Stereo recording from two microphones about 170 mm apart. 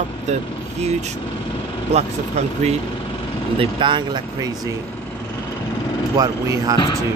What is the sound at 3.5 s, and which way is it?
Speech, 30° right (ahead or behind).